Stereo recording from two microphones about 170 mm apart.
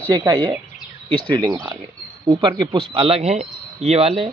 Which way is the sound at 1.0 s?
30° right (ahead or behind).